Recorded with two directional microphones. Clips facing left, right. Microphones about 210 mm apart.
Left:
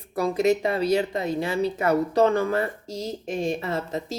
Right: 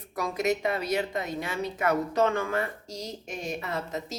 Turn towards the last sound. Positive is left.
turn(degrees=30)  # may be behind; listen again after turning